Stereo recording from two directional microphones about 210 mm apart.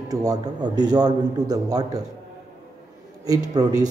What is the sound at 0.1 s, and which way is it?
A man's voice, 15° right (ahead or behind).